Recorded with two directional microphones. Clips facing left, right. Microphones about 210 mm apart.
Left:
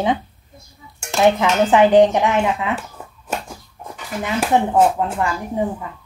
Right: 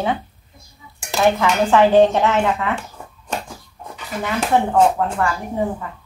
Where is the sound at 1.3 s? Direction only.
15° left (ahead or behind).